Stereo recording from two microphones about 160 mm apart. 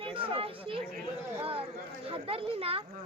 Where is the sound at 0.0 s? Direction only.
35° right (ahead or behind).